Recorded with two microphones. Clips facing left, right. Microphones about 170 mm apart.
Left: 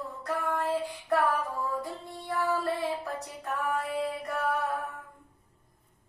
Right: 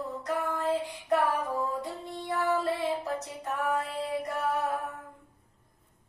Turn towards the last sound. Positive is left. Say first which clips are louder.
# even
turn(degrees=-20)  # may be behind; listen again after turning